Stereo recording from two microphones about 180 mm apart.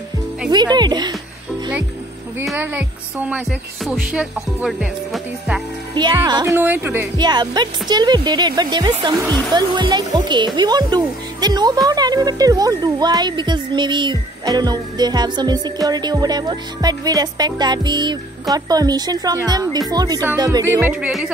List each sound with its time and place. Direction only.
0.5 s speech: 25° right (ahead or behind)
2.4 s music: 10° right (ahead or behind)
6.2 s speech: 20° right (ahead or behind)
7.2 s speech: 25° right (ahead or behind)
20.7 s speech: 10° right (ahead or behind)